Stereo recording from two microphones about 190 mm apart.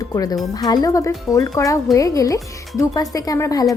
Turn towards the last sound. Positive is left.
turn(degrees=15)  # may be behind; listen again after turning